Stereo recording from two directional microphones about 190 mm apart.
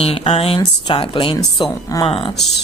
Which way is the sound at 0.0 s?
30° left (ahead or behind).